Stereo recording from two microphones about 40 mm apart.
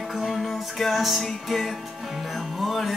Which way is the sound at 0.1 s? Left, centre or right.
Centre.